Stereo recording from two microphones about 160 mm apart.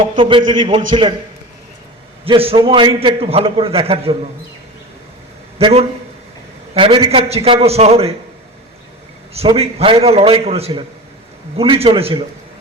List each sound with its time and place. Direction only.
0.2 s a man's voice: 30° right (ahead or behind)
2.2 s a man's voice: 35° right (ahead or behind)
5.5 s a man's voice: 40° right (ahead or behind)
9.3 s a man's voice: 40° right (ahead or behind)